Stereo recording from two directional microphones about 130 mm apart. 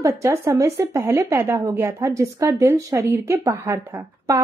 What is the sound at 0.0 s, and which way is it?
Speech, 20° right (ahead or behind).